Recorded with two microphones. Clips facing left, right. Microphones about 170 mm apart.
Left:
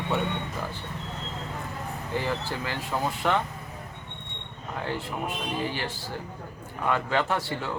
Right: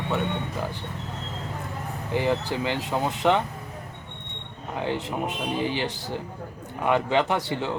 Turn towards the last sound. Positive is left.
turn(degrees=-20)  # may be behind; listen again after turning